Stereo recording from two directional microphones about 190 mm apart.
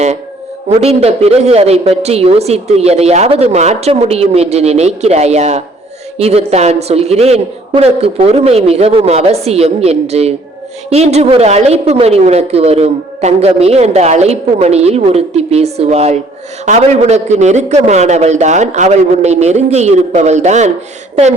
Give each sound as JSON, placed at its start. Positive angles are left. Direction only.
{"t": 0.7, "sound": "a woman's voice", "side_deg": -35}